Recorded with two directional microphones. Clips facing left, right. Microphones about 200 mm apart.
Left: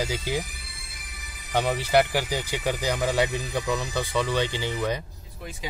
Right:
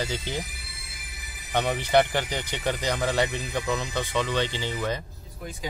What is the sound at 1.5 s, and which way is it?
Speech, 5° left (ahead or behind).